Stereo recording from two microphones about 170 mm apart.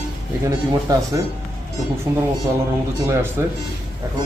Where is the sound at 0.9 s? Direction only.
20° right (ahead or behind).